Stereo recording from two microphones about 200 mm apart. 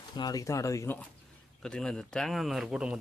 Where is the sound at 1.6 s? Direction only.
5° left (ahead or behind).